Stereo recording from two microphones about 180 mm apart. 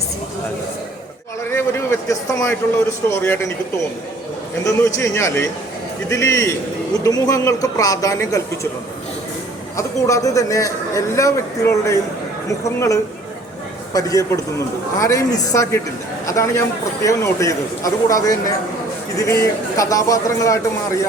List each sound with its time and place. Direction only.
1.5 s a man's voice: 15° left (ahead or behind)
4.6 s a man's voice: 15° left (ahead or behind)
9.7 s a man's voice: 15° left (ahead or behind)
13.9 s a man's voice: 20° left (ahead or behind)